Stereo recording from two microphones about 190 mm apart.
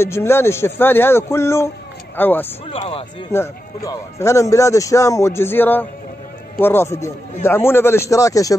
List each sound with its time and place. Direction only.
0.0 s a man's voice: 15° left (ahead or behind)
2.7 s speech: 30° left (ahead or behind)
3.3 s a man's voice: 15° left (ahead or behind)